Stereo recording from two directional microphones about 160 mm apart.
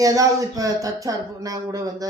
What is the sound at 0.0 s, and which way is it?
Speech, 20° right (ahead or behind).